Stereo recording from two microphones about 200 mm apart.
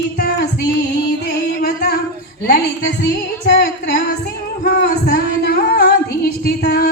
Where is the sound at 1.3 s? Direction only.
50° left (ahead or behind).